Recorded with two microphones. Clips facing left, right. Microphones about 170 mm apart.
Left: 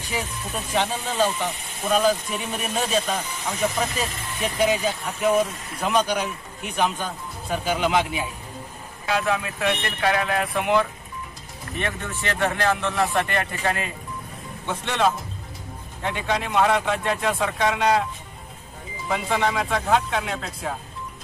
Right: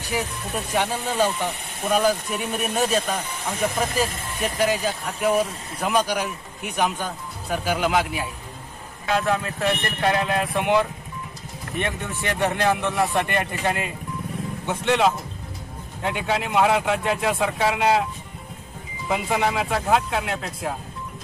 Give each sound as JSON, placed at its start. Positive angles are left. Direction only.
{"t": 0.1, "sound": "speech", "side_deg": -10}
{"t": 10.1, "sound": "speech", "side_deg": -15}
{"t": 11.8, "sound": "speech", "side_deg": -15}
{"t": 19.0, "sound": "speech", "side_deg": -10}